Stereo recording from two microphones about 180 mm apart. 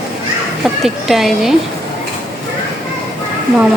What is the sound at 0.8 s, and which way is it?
Speech, centre (ahead or behind).